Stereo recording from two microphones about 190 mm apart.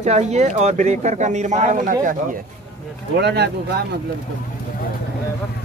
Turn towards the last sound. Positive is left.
turn(degrees=-60)  # may be behind; listen again after turning